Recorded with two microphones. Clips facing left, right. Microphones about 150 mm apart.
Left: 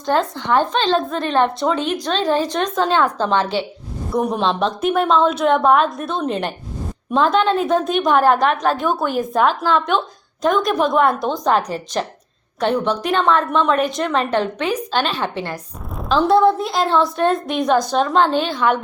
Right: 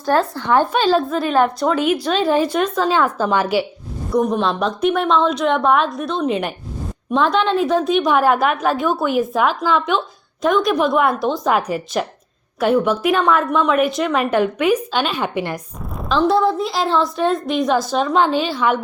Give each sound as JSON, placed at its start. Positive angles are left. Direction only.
{"t": 0.0, "sound": "a woman's voice", "side_deg": -5}
{"t": 4.1, "sound": "a woman's voice", "side_deg": 5}
{"t": 16.0, "sound": "a woman's voice", "side_deg": 0}